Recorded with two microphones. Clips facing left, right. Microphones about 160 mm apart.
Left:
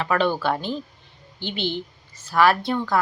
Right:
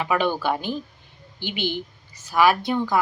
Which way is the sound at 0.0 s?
10° right (ahead or behind).